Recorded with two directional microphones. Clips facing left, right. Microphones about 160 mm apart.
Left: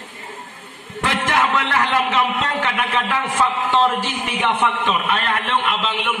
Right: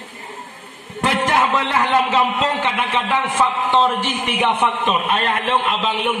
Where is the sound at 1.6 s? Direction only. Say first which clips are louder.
Right 2 dB; 25° right (ahead or behind).